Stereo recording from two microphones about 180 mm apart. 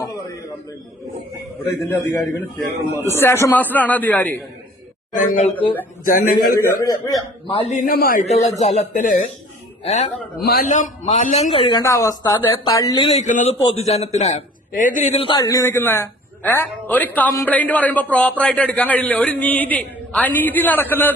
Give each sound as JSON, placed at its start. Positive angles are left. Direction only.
{"t": 1.6, "sound": "speech", "side_deg": 10}
{"t": 5.1, "sound": "a man's voice", "side_deg": 45}
{"t": 5.4, "sound": "speech", "side_deg": 30}
{"t": 6.1, "sound": "a man's voice", "side_deg": 50}
{"t": 6.8, "sound": "speech", "side_deg": 20}
{"t": 7.8, "sound": "a man's voice", "side_deg": 55}
{"t": 8.3, "sound": "a man's voice", "side_deg": 40}
{"t": 9.8, "sound": "a man's voice", "side_deg": 35}
{"t": 10.3, "sound": "a man's voice", "side_deg": 60}
{"t": 10.7, "sound": "a man's voice", "side_deg": 40}
{"t": 11.8, "sound": "speech", "side_deg": 15}
{"t": 13.1, "sound": "a man's voice", "side_deg": 40}
{"t": 15.4, "sound": "speech", "side_deg": 20}